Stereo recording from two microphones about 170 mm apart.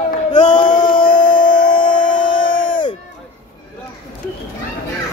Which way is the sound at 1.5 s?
55° left (ahead or behind).